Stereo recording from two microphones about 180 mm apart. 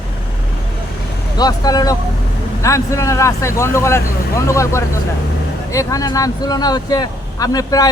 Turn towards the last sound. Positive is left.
turn(degrees=20)  # may be behind; listen again after turning